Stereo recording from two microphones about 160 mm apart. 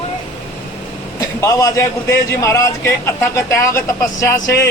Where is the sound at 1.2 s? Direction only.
20° left (ahead or behind).